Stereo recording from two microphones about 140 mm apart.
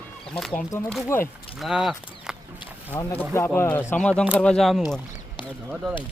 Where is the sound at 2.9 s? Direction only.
15° left (ahead or behind).